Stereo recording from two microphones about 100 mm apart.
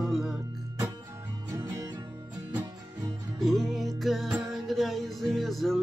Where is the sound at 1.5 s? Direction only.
40° right (ahead or behind).